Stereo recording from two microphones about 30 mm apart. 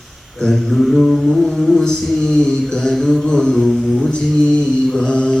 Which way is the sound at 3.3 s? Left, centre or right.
Left.